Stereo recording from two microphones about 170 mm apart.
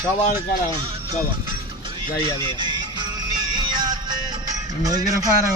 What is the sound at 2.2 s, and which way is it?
Music, 25° right (ahead or behind).